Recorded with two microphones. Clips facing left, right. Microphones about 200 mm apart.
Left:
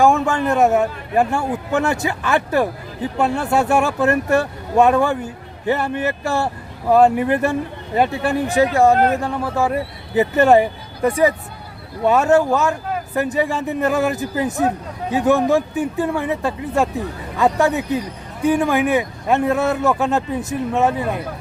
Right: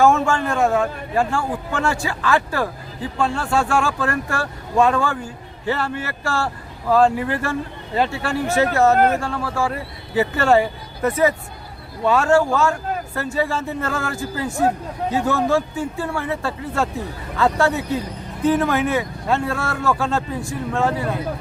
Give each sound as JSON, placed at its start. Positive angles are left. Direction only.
{"t": 0.0, "sound": "a man's voice", "side_deg": 15}